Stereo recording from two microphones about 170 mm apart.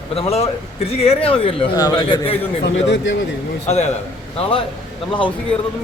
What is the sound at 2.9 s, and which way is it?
Speech, 90° left.